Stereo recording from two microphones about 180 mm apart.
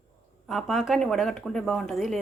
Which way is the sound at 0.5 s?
Centre (ahead or behind).